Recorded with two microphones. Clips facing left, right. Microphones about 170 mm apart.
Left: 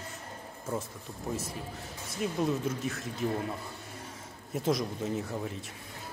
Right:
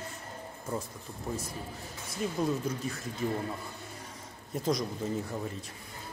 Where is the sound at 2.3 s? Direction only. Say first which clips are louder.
Left 1 dB; centre (ahead or behind).